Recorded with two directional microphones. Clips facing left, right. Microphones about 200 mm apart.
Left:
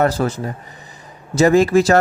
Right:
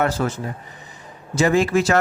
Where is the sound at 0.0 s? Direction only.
35° left (ahead or behind).